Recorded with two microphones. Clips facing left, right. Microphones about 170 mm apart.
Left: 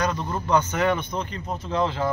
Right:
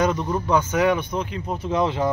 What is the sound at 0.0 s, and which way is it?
Speech, 15° right (ahead or behind).